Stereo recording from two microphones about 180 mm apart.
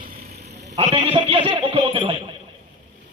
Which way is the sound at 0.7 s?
30° right (ahead or behind).